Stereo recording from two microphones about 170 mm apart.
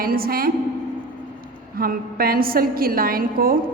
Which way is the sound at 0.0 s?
60° right (ahead or behind).